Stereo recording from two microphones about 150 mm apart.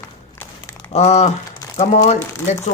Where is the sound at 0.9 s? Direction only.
45° left (ahead or behind).